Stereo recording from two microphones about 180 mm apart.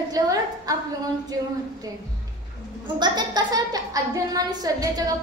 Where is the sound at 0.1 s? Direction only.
20° right (ahead or behind).